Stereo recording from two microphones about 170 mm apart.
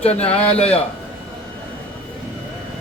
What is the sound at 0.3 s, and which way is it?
Speech, 5° left (ahead or behind).